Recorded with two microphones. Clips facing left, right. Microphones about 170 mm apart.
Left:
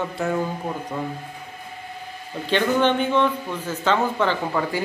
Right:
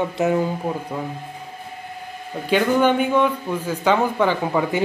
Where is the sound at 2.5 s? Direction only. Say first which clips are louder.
Right 2 dB; 10° right (ahead or behind).